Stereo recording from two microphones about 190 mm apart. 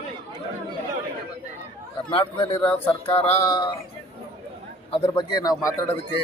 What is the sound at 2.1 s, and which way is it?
Speech, 25° left (ahead or behind).